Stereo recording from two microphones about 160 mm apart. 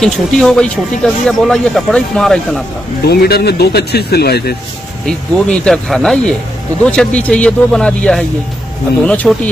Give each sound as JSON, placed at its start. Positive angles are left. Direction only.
{"t": 0.0, "sound": "speech", "side_deg": 5}
{"t": 3.1, "sound": "speech", "side_deg": 80}
{"t": 5.0, "sound": "speech", "side_deg": 5}